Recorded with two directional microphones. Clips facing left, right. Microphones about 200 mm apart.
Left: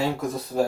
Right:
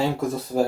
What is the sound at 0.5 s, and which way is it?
Speech, 40° right (ahead or behind).